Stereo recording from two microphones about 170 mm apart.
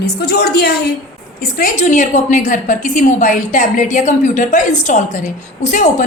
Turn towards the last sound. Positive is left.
turn(degrees=45)  # may be behind; listen again after turning